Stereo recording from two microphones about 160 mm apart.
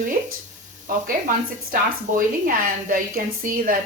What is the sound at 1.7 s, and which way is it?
A woman's voice, 60° right (ahead or behind).